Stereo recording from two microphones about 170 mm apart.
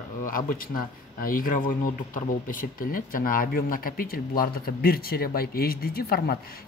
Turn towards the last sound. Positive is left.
turn(degrees=65)  # may be behind; listen again after turning